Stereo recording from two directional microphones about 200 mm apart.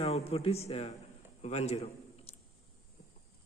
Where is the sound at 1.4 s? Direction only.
30° left (ahead or behind).